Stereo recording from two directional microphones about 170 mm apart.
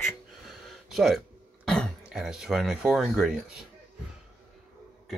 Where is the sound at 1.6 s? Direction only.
5° left (ahead or behind).